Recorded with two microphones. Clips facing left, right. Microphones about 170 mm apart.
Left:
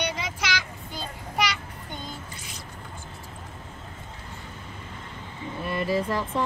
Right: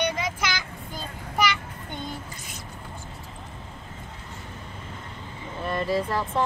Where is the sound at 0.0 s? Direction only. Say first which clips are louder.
Right 3 dB; 50° right (ahead or behind).